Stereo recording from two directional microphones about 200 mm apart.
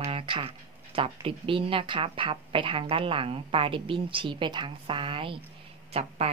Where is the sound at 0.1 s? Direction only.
25° right (ahead or behind).